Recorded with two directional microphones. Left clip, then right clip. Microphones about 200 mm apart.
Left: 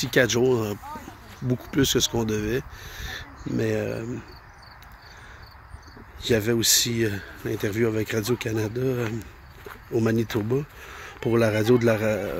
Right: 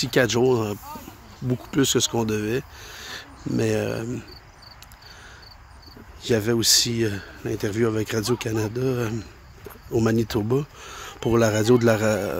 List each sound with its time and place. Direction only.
0.0 s speech: 10° right (ahead or behind)
6.2 s speech: 10° right (ahead or behind)